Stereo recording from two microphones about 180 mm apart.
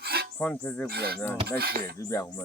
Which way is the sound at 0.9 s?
65° right (ahead or behind).